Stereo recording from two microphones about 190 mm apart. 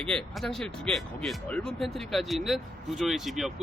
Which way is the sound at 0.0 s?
5° left (ahead or behind).